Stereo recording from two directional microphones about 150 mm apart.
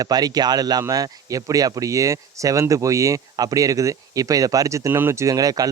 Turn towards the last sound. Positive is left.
turn(degrees=-25)  # may be behind; listen again after turning